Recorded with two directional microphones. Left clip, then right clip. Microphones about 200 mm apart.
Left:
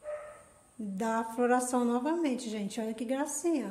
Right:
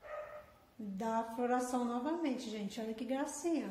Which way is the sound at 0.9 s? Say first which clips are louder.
Left 5 dB; 35° left (ahead or behind).